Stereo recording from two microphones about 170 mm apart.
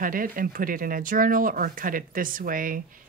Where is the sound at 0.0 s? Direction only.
55° right (ahead or behind).